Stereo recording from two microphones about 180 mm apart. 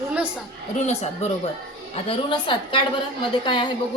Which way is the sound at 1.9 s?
30° left (ahead or behind).